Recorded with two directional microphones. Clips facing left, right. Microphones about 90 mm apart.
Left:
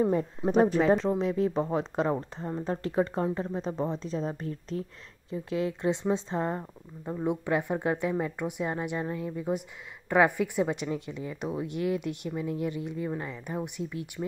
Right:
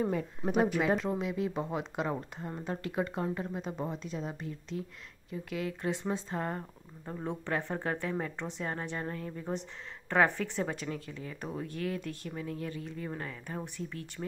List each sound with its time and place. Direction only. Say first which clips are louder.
0.0 s speech: left 6 dB; 30° left (ahead or behind)
5.3 s a woman's voice: left 6 dB; 25° left (ahead or behind)